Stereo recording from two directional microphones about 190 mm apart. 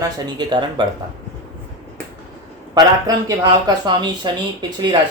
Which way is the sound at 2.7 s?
20° right (ahead or behind).